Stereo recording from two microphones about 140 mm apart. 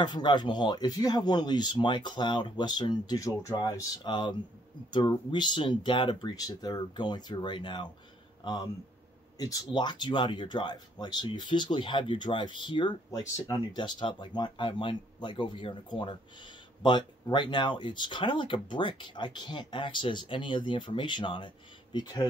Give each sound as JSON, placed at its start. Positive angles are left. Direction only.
{"t": 0.0, "sound": "speech", "side_deg": 30}